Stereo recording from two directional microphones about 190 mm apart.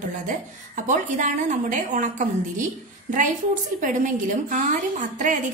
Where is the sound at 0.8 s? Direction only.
40° right (ahead or behind).